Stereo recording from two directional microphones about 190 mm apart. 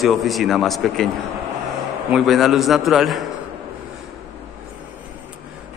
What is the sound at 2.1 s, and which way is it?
A man's voice, centre (ahead or behind).